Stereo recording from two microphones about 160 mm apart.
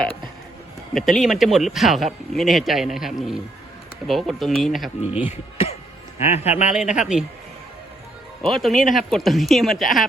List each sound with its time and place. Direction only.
0.9 s speech: centre (ahead or behind)
6.1 s a man's voice: 45° left (ahead or behind)
6.7 s speech: 5° right (ahead or behind)
8.4 s speech: centre (ahead or behind)